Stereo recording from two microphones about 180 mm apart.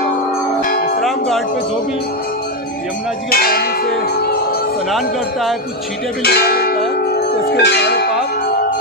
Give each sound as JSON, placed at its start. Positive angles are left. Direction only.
{"t": 0.7, "sound": "tubular bells", "side_deg": 50}
{"t": 1.0, "sound": "music", "side_deg": 0}
{"t": 3.3, "sound": "church bell", "side_deg": 55}
{"t": 4.9, "sound": "speech", "side_deg": 0}
{"t": 6.2, "sound": "speech", "side_deg": 60}
{"t": 7.1, "sound": "bell", "side_deg": 60}